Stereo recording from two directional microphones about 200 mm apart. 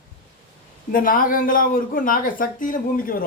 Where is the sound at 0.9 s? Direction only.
45° left (ahead or behind).